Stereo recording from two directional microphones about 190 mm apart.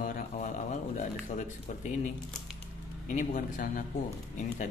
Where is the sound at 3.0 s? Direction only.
45° left (ahead or behind).